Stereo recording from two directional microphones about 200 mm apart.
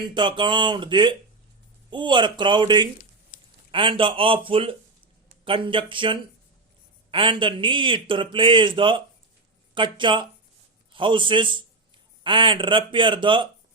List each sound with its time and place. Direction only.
0.1 s a man's voice: 25° right (ahead or behind)